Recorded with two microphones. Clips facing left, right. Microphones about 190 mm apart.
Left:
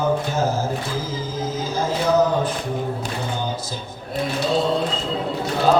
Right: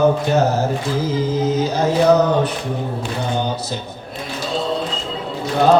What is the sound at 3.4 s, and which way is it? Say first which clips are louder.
Speech: right 5 dB; 70° right (ahead or behind).